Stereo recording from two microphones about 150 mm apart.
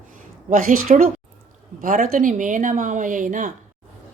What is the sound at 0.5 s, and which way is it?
Speech, 60° right (ahead or behind).